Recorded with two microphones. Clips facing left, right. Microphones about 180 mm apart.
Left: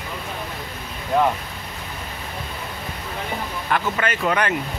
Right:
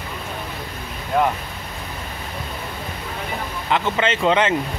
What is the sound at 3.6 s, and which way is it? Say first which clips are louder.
Speech: right 3 dB; 20° right (ahead or behind).